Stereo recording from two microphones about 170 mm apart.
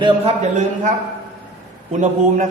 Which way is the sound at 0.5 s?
45° right (ahead or behind).